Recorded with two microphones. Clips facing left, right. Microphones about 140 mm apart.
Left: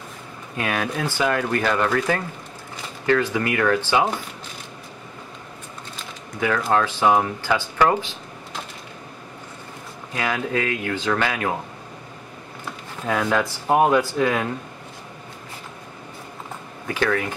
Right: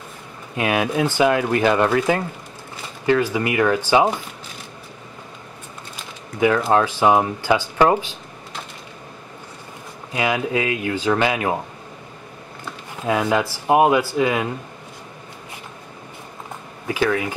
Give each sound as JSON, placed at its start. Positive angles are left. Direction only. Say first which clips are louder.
{"t": 0.6, "sound": "speech", "louder": "right 5 dB", "side_deg": -15}
{"t": 6.4, "sound": "speech", "louder": "right 4 dB", "side_deg": -15}
{"t": 10.1, "sound": "speech", "louder": "right 3 dB", "side_deg": -15}
{"t": 13.0, "sound": "speech", "louder": "right 2 dB", "side_deg": -10}
{"t": 16.8, "sound": "speech", "louder": "right 2 dB", "side_deg": -10}